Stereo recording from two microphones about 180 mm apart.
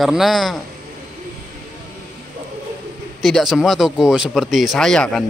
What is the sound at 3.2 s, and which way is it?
Speech, centre (ahead or behind).